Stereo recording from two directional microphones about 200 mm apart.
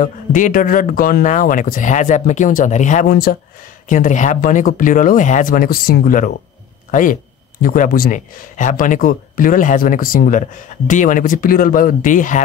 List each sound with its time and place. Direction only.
0.0 s speech: 40° left (ahead or behind)
3.9 s speech: 40° left (ahead or behind)